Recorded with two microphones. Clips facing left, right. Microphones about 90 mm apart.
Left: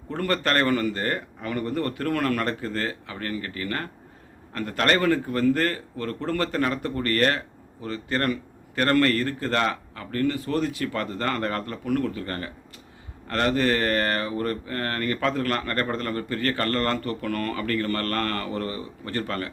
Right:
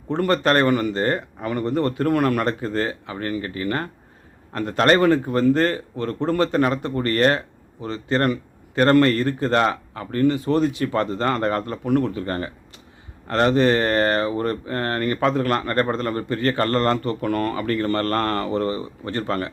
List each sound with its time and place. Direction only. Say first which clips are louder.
0.1 s a man's voice: right 6 dB; 20° right (ahead or behind)